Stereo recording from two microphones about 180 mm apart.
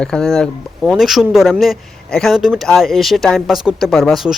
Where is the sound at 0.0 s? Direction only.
5° left (ahead or behind).